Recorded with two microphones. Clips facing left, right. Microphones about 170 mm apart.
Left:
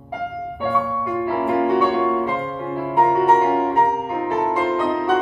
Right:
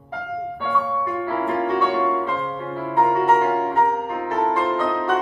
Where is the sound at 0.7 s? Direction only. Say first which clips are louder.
Even; 10° left (ahead or behind).